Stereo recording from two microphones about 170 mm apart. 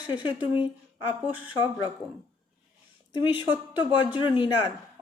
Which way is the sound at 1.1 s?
10° right (ahead or behind).